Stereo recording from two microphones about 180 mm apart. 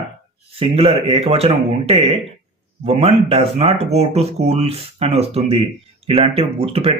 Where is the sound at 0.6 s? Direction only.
35° right (ahead or behind).